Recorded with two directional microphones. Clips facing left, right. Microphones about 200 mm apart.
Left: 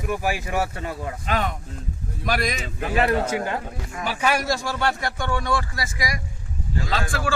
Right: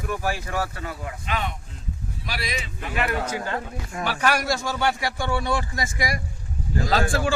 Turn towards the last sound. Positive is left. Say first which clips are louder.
# right 4 dB
turn(degrees=-30)  # may be behind; listen again after turning